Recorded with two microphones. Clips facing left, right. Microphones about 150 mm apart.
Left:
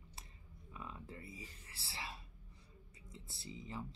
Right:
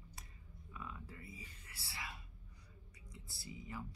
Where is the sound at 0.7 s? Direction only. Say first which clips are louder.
Left 1 dB; 25° left (ahead or behind).